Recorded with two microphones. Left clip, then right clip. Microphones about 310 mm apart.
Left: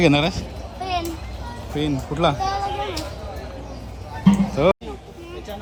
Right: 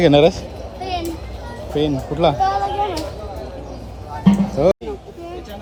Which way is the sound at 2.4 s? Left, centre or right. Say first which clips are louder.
Right 6 dB; left.